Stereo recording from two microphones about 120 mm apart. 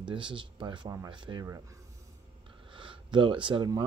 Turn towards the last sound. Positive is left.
turn(degrees=-35)  # may be behind; listen again after turning